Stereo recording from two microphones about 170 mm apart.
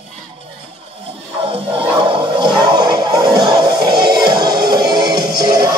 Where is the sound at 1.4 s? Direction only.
35° right (ahead or behind).